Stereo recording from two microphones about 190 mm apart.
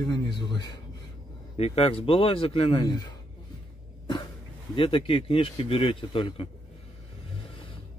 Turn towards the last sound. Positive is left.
turn(degrees=25)  # may be behind; listen again after turning